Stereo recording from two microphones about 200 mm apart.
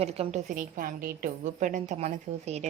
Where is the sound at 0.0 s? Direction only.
30° right (ahead or behind).